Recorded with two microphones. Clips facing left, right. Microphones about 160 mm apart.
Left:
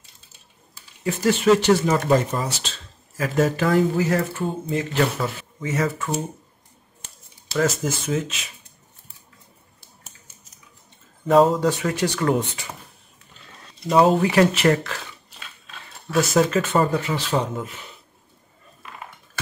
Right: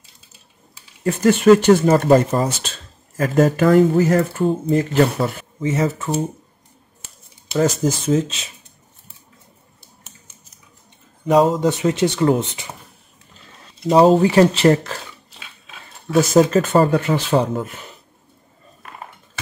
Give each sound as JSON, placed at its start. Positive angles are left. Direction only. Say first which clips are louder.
{"t": 1.0, "sound": "speech", "louder": "right 6 dB", "side_deg": -50}
{"t": 7.4, "sound": "speech", "louder": "right 4 dB", "side_deg": -30}
{"t": 11.2, "sound": "speech", "louder": "right 1 dB", "side_deg": -20}
{"t": 13.8, "sound": "speech", "louder": "right 5 dB", "side_deg": -30}
{"t": 15.3, "sound": "a sound", "louder": "right 1 dB", "side_deg": -5}
{"t": 16.2, "sound": "speech", "louder": "right 5 dB", "side_deg": -35}
{"t": 16.9, "sound": "speech", "louder": "right 6 dB", "side_deg": -55}